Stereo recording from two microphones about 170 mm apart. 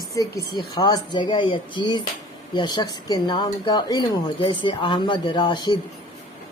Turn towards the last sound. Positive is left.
turn(degrees=25)  # may be behind; listen again after turning